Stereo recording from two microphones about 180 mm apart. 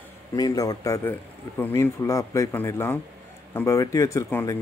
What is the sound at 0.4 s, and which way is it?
A man's voice, 20° left (ahead or behind).